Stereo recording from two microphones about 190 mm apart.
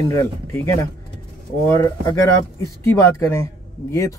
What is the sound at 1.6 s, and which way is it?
Speech, 20° left (ahead or behind).